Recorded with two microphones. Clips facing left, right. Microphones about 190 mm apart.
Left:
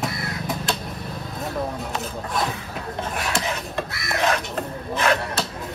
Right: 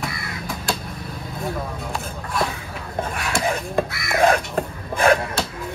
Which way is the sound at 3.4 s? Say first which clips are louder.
Right 6 dB; 50° right (ahead or behind).